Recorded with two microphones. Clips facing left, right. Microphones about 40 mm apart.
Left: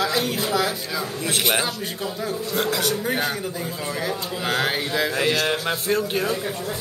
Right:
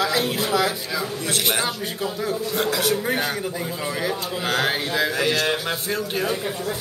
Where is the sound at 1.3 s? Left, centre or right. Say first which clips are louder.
Left 1 dB; centre.